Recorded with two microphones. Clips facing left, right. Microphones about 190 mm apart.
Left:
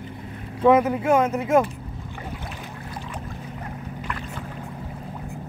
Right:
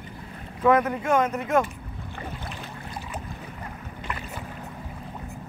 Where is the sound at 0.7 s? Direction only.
5° left (ahead or behind).